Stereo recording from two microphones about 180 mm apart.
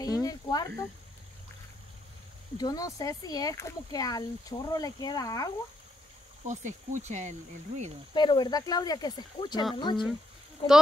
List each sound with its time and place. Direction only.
0.0 s a sound: 20° left (ahead or behind)
2.5 s speech: 20° left (ahead or behind)
6.4 s speech: 40° right (ahead or behind)
8.1 s speech: 25° left (ahead or behind)